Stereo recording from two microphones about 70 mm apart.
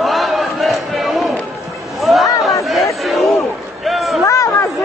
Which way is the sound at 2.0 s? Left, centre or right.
Centre.